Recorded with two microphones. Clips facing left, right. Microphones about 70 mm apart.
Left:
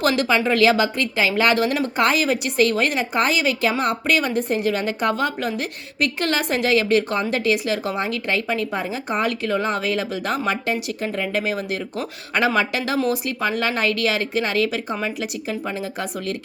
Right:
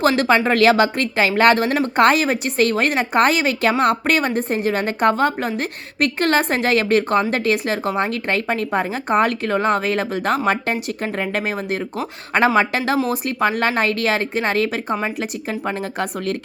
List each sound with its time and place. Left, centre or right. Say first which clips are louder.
0.2 s a woman's voice: right 2 dB; right